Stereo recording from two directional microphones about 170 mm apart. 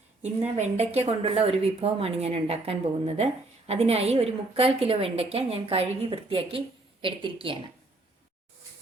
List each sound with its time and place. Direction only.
0.6 s a woman's voice: 40° right (ahead or behind)